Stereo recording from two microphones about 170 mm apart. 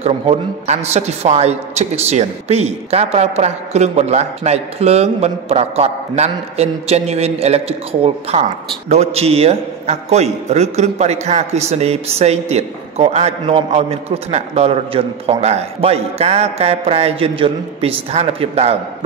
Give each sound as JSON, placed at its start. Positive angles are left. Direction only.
{"t": 0.0, "sound": "a man's voice", "side_deg": -40}